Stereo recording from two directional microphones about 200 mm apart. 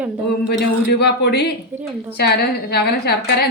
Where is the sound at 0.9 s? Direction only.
55° left (ahead or behind).